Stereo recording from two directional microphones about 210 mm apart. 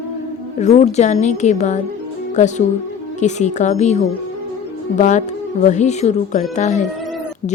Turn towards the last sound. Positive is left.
turn(degrees=35)  # may be behind; listen again after turning